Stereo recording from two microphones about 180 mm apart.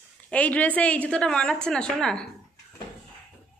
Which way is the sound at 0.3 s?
10° left (ahead or behind).